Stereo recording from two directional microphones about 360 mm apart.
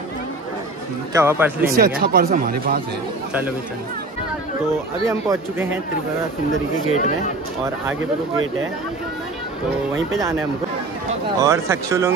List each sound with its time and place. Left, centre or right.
1.1 s speech: centre
1.7 s speech: right
5.0 s speech: centre
6.9 s speech: centre
7.9 s speech: right
11.3 s speech: centre